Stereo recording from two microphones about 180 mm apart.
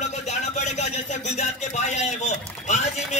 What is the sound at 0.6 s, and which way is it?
A man's voice, 40° left (ahead or behind).